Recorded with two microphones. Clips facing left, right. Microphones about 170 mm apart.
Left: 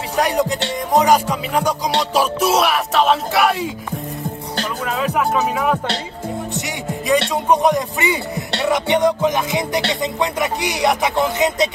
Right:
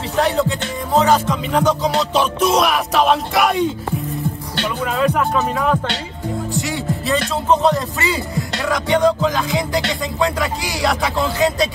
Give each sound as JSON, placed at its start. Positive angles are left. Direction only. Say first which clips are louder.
{"t": 0.2, "sound": "speech", "louder": "even", "side_deg": 15}
{"t": 4.8, "sound": "speech", "louder": "right 2 dB", "side_deg": 0}
{"t": 7.4, "sound": "speech", "louder": "right 3 dB", "side_deg": 15}
{"t": 8.5, "sound": "music", "louder": "left 2 dB", "side_deg": 25}